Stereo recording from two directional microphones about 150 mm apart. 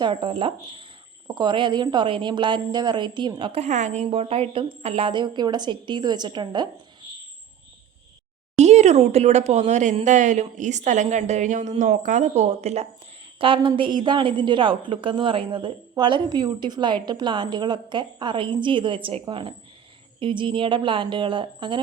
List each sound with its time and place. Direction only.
0.0 s a woman's voice: 35° right (ahead or behind)
3.6 s a woman's voice: 50° right (ahead or behind); by 6.7 s 30° right (ahead or behind)
8.5 s speech: 50° right (ahead or behind)
13.4 s a woman's voice: 35° right (ahead or behind)